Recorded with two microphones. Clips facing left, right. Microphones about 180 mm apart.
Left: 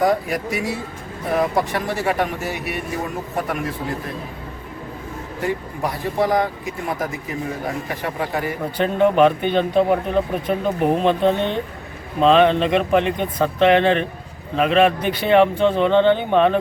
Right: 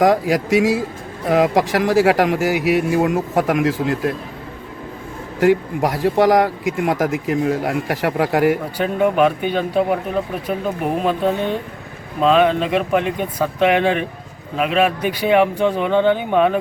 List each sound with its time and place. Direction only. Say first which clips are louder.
0.0 s speech: right 4 dB; 90° right
5.4 s speech: right 9 dB; 90° right
8.8 s a man's voice: left 2 dB; 10° right (ahead or behind)
11.0 s a man's voice: left 1 dB; 5° right (ahead or behind)